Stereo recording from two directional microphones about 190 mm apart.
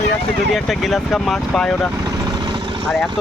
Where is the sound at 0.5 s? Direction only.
Centre (ahead or behind).